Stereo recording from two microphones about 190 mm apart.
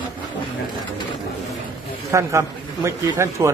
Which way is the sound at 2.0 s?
15° right (ahead or behind).